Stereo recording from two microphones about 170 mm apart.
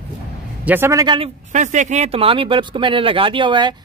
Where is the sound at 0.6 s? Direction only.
15° right (ahead or behind).